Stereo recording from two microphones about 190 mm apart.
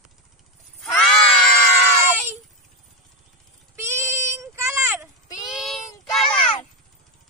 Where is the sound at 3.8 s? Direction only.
15° right (ahead or behind).